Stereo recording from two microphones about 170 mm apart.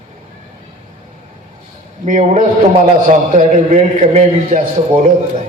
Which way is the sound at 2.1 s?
50° right (ahead or behind).